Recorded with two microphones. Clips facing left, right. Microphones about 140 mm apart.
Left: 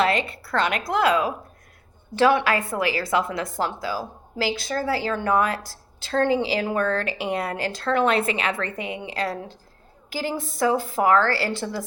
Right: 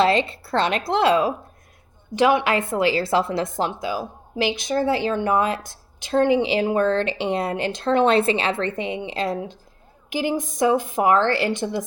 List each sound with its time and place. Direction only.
0.0 s a woman's voice: 25° right (ahead or behind)
2.1 s a woman's voice: 15° right (ahead or behind)